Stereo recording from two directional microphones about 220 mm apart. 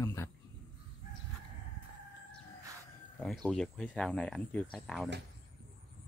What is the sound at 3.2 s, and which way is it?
Speech, centre (ahead or behind).